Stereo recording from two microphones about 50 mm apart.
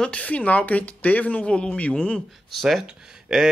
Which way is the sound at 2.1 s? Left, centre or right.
Centre.